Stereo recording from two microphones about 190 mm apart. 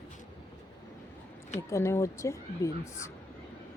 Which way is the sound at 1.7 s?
15° left (ahead or behind).